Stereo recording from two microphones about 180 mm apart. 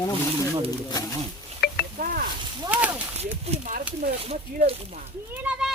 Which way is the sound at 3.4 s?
35° right (ahead or behind).